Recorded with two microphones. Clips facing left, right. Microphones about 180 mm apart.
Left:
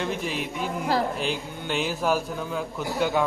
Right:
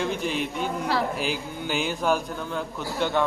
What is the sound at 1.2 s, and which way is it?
Speech, 5° right (ahead or behind).